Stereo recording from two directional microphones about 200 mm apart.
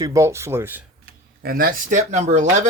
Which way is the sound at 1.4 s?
45° right (ahead or behind).